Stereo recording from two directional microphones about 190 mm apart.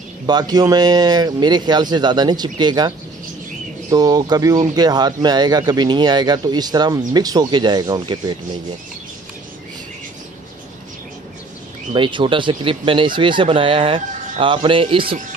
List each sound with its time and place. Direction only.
0.3 s speech: 20° right (ahead or behind)
3.9 s speech: 20° right (ahead or behind)
11.9 s speech: 25° right (ahead or behind)